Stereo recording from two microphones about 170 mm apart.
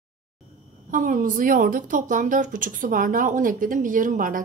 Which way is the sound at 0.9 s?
50° right (ahead or behind).